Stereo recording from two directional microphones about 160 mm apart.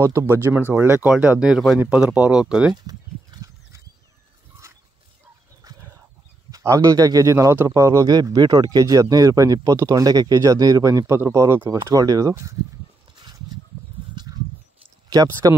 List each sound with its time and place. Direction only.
0.0 s speech: 15° right (ahead or behind)
2.7 s a sound: 25° right (ahead or behind)
5.6 s dog: 20° right (ahead or behind)
6.5 s a man's voice: 20° right (ahead or behind)
14.2 s horse: 25° right (ahead or behind)
15.0 s speech: 20° right (ahead or behind)